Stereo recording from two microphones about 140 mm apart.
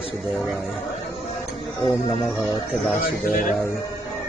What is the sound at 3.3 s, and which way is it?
Speech, 70° left (ahead or behind).